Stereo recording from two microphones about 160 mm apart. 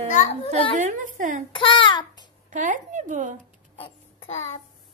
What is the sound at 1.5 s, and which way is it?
Child singing, 30° left (ahead or behind).